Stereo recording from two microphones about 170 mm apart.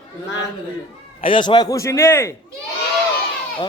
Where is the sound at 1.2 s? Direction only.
30° left (ahead or behind).